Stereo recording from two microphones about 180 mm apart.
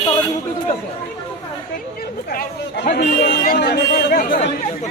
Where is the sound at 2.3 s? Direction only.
60° left (ahead or behind).